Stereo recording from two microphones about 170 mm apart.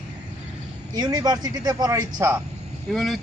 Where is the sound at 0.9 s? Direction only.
25° right (ahead or behind).